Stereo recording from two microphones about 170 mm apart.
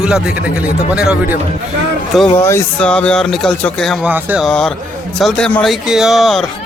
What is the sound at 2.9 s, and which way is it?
Mantra, 5° left (ahead or behind).